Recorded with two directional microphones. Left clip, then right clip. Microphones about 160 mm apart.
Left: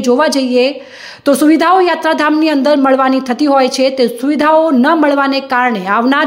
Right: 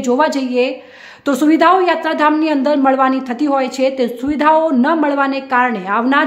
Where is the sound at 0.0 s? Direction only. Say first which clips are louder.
Left 3 dB; 15° left (ahead or behind).